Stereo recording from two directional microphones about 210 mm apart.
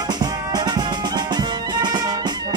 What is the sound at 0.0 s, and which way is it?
Music, 20° right (ahead or behind).